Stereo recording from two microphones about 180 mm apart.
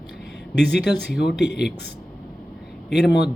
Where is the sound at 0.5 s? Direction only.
70° left (ahead or behind).